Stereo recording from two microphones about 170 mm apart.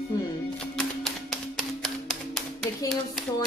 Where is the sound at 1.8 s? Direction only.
Centre (ahead or behind).